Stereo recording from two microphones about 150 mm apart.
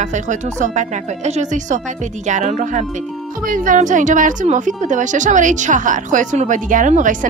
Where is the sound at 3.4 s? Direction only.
65° right (ahead or behind).